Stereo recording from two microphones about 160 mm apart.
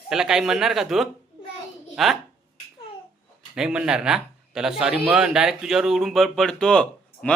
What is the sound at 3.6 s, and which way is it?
A man's voice, 5° right (ahead or behind).